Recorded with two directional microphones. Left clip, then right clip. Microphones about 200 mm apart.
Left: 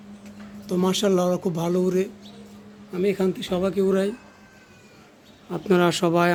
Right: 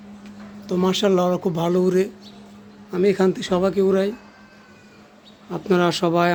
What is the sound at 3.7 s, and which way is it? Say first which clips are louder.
Speech: right 1 dB; 10° right (ahead or behind).